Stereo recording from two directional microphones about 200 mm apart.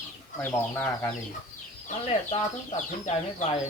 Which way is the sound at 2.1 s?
30° left (ahead or behind).